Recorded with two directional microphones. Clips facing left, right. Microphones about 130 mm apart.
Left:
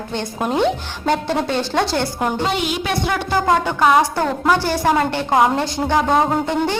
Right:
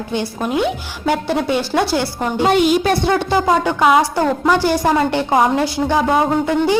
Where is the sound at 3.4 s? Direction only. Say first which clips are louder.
Right 1 dB; 5° right (ahead or behind).